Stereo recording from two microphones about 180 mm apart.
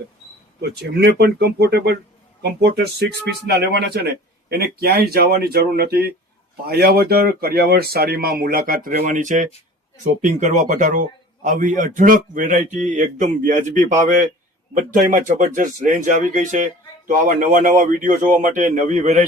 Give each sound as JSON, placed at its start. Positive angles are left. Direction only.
{"t": 0.6, "sound": "speech", "side_deg": -65}